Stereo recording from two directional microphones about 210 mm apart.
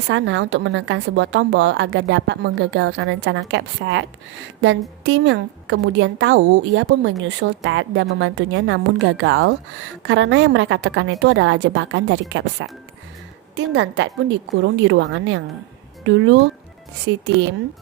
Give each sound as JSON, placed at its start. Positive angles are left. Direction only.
{"t": 0.1, "sound": "a woman's voice", "side_deg": -60}
{"t": 5.0, "sound": "a woman's voice", "side_deg": -60}